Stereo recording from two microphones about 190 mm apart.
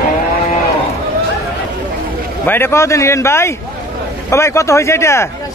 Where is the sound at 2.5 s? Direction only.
10° left (ahead or behind).